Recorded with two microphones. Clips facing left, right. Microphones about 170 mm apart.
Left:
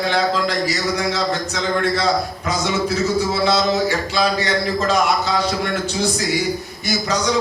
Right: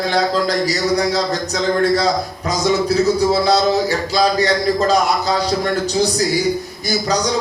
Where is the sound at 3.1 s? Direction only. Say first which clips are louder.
Right 3 dB; 35° right (ahead or behind).